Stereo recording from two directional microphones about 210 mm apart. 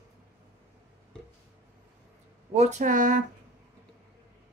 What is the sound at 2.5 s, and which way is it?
Speech, 35° right (ahead or behind).